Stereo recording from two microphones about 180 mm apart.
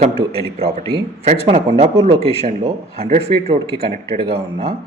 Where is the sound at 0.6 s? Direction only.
35° right (ahead or behind).